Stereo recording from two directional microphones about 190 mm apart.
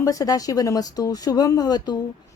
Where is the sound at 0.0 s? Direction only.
20° left (ahead or behind).